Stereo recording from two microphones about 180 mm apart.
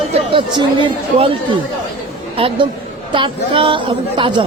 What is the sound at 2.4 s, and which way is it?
Speech, 30° right (ahead or behind).